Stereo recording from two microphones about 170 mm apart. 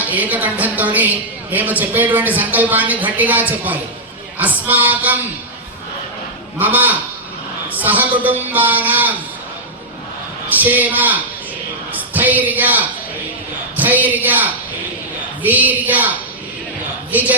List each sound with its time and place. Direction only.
0.0 s a woman's voice: 10° right (ahead or behind)
6.6 s a woman's voice: 10° right (ahead or behind)
10.5 s a woman's voice: 10° right (ahead or behind)